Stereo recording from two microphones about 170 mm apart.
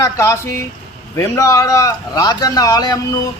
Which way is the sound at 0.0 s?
15° left (ahead or behind).